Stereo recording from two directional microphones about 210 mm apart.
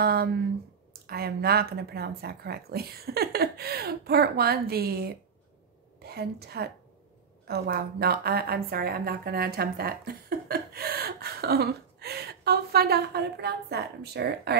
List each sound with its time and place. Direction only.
0.0 s a woman's voice: 45° right (ahead or behind)